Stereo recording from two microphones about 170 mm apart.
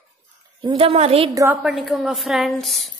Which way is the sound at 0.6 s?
35° right (ahead or behind).